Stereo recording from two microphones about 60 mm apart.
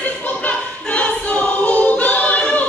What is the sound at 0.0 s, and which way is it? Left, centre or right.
Choir, left.